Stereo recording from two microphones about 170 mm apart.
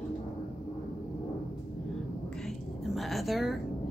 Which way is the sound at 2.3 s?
Centre (ahead or behind).